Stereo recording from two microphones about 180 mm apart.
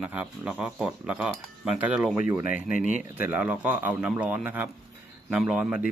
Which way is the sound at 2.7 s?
45° left (ahead or behind).